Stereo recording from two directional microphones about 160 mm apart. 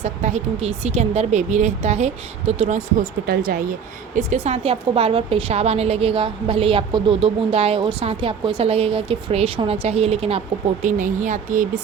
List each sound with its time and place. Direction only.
0.0 s speech: 45° right (ahead or behind)
4.1 s a woman's voice: 45° right (ahead or behind)
10.8 s speech: 50° right (ahead or behind)